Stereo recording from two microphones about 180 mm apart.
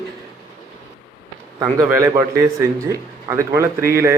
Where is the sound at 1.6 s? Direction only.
20° right (ahead or behind).